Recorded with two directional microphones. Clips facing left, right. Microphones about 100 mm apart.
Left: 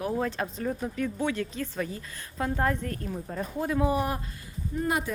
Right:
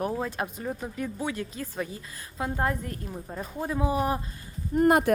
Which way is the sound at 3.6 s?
20° right (ahead or behind).